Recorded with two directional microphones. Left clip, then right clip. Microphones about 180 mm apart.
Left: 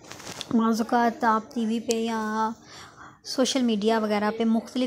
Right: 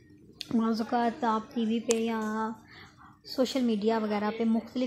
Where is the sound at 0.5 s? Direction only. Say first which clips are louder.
Left 5 dB; 25° left (ahead or behind).